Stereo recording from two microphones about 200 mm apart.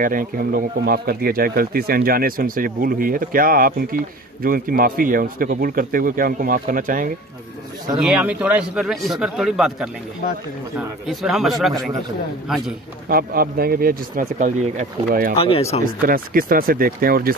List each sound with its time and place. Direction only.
0.0 s speech: 45° right (ahead or behind)
8.0 s speech: 5° right (ahead or behind)
13.1 s speech: 50° right (ahead or behind)
15.3 s speech: 30° left (ahead or behind)
16.1 s speech: 45° right (ahead or behind)